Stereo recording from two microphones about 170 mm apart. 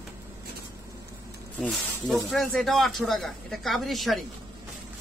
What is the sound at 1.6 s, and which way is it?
Speech, 10° left (ahead or behind).